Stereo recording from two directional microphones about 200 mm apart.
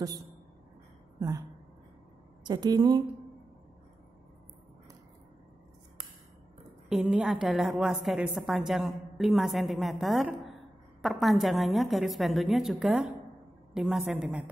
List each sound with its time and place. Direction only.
2.4 s a woman's voice: 20° right (ahead or behind)
6.9 s a woman's voice: 5° right (ahead or behind)